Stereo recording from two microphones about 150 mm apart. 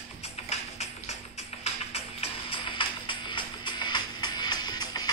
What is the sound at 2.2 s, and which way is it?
Music, 35° left (ahead or behind).